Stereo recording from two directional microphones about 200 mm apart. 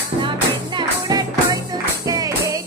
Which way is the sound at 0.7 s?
20° right (ahead or behind).